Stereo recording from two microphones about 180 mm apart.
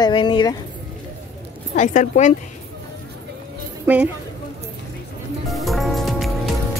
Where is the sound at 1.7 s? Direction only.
45° left (ahead or behind).